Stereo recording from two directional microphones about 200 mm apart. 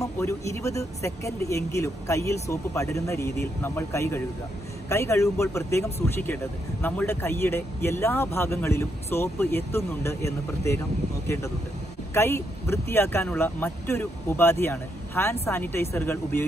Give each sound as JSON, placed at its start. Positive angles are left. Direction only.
{"t": 0.0, "sound": "speech", "side_deg": 15}
{"t": 12.1, "sound": "speech", "side_deg": 10}